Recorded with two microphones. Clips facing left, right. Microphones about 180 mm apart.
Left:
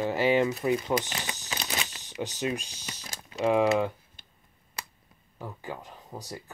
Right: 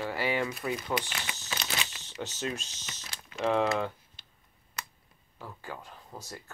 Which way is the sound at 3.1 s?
45° left (ahead or behind).